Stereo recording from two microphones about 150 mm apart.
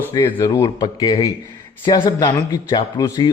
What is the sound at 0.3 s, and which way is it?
A man's voice, 25° left (ahead or behind).